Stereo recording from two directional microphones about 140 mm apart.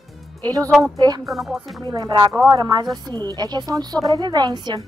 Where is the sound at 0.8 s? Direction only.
25° right (ahead or behind).